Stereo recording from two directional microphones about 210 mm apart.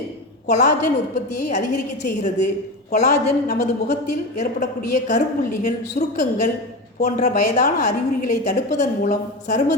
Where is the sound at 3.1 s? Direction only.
45° left (ahead or behind).